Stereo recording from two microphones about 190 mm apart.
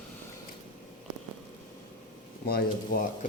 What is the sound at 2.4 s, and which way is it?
Speech, 50° left (ahead or behind).